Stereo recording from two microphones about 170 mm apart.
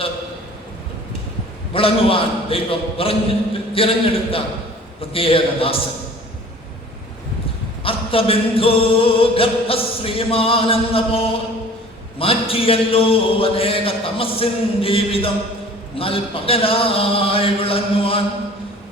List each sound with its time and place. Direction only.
1.7 s music: 35° left (ahead or behind)
7.9 s music: 35° left (ahead or behind)